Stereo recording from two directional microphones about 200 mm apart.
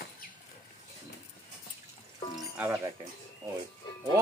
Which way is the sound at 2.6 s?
10° right (ahead or behind).